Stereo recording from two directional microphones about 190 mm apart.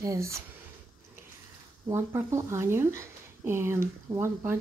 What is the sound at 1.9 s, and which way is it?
Speech, 15° right (ahead or behind).